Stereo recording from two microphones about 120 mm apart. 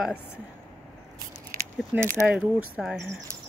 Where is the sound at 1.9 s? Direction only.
25° right (ahead or behind).